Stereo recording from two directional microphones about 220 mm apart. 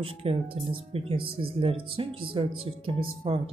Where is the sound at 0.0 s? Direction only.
25° right (ahead or behind).